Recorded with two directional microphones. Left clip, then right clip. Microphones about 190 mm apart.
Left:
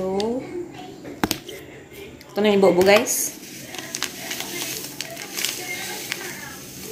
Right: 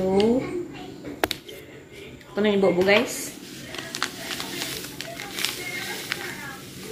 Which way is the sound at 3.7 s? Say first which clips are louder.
Even; 20° right (ahead or behind).